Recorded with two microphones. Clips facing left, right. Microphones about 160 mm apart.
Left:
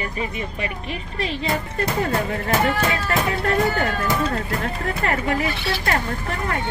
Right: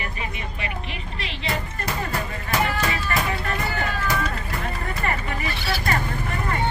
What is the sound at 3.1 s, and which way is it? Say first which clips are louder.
Music: left 4 dB; 75° left (ahead or behind).